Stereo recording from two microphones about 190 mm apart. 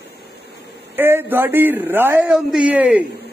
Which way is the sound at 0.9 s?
10° right (ahead or behind).